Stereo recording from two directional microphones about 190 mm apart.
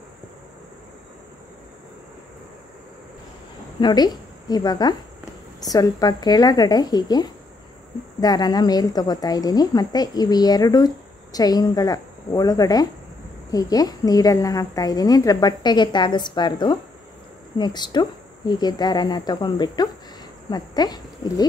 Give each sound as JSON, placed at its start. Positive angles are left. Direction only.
{"t": 3.8, "sound": "a woman's voice", "side_deg": 20}